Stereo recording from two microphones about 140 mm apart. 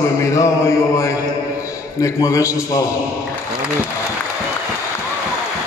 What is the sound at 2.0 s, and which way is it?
Speech, 25° left (ahead or behind).